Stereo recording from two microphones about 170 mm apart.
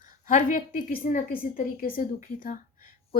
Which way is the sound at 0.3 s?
50° left (ahead or behind).